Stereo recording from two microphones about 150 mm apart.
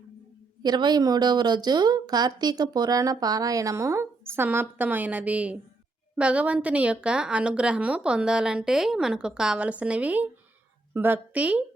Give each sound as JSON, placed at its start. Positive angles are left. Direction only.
{"t": 0.6, "sound": "a woman's voice", "side_deg": -30}